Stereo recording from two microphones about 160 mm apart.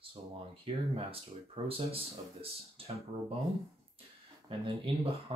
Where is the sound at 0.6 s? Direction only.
35° right (ahead or behind).